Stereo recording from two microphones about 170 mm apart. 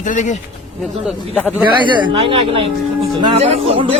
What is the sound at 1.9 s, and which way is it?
A man's voice, 30° right (ahead or behind).